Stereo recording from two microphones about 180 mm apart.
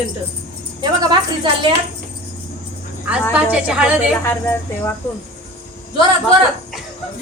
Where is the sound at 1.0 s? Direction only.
25° right (ahead or behind).